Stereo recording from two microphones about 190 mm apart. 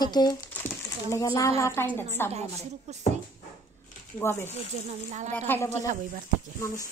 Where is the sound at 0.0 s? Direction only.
20° left (ahead or behind).